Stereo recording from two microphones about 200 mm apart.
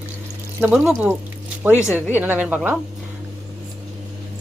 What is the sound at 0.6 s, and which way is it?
Speech, 5° right (ahead or behind).